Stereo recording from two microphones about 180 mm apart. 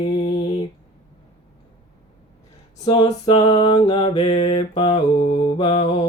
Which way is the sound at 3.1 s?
30° left (ahead or behind).